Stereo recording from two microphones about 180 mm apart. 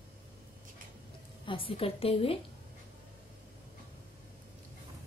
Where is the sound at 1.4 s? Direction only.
30° left (ahead or behind).